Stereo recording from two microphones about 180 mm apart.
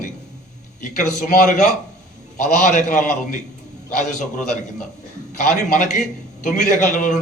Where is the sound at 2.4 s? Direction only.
40° left (ahead or behind).